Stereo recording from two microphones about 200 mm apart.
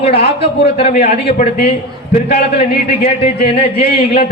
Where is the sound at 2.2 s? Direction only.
55° left (ahead or behind).